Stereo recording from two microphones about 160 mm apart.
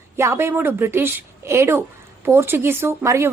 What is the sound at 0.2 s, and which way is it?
A woman's voice, 15° right (ahead or behind).